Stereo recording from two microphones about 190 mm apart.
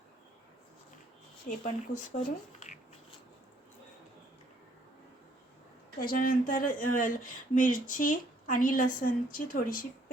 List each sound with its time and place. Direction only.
1.5 s speech: 40° left (ahead or behind)
6.0 s speech: 50° left (ahead or behind)